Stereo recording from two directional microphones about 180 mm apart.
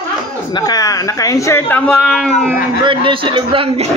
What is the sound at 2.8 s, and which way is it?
A man's voice, 30° right (ahead or behind).